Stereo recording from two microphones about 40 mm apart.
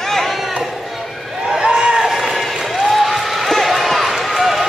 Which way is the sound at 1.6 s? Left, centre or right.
Right.